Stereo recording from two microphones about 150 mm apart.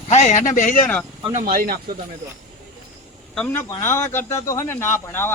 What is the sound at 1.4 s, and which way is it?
Speech, 85° right.